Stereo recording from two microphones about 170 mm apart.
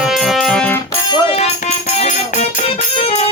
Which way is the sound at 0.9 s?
30° left (ahead or behind).